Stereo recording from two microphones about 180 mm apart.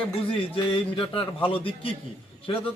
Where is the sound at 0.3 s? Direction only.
30° left (ahead or behind).